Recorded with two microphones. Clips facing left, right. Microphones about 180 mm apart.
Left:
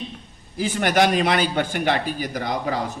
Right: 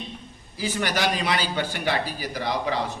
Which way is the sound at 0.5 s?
50° left (ahead or behind).